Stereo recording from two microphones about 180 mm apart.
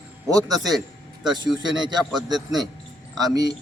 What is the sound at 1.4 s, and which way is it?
Speech, centre (ahead or behind).